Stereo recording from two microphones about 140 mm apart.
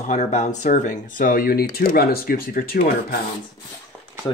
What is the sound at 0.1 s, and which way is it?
Speech, 55° left (ahead or behind).